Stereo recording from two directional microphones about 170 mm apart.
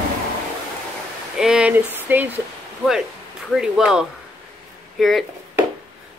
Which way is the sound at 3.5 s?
5° right (ahead or behind).